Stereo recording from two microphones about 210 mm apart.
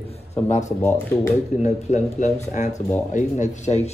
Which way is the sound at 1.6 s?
35° left (ahead or behind).